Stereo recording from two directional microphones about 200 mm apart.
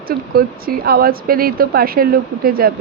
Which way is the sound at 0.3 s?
50° right (ahead or behind).